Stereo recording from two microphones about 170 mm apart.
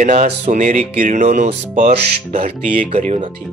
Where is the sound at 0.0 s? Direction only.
50° right (ahead or behind).